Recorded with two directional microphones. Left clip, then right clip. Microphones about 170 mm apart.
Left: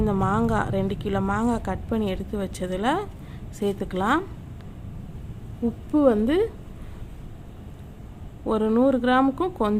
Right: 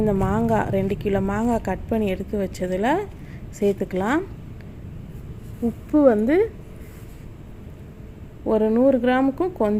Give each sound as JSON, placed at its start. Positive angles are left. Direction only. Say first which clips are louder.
{"t": 0.0, "sound": "a woman's voice", "louder": "right 2 dB", "side_deg": -10}
{"t": 5.9, "sound": "a woman's voice", "louder": "right 3 dB", "side_deg": -10}
{"t": 8.4, "sound": "a woman's voice", "louder": "right 3 dB", "side_deg": -5}